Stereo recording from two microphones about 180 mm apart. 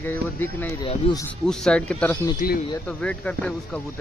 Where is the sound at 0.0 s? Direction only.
10° left (ahead or behind).